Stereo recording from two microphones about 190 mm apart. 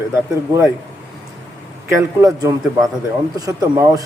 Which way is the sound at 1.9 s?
20° right (ahead or behind).